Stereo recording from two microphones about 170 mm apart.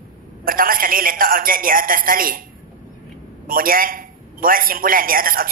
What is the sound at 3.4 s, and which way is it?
A man's voice, 55° right (ahead or behind).